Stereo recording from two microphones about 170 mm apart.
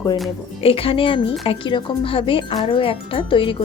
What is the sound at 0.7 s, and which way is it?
A woman's voice, 35° left (ahead or behind).